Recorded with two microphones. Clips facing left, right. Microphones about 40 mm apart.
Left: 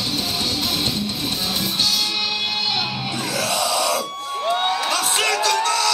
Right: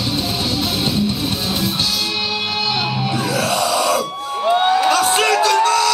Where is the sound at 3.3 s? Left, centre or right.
Centre.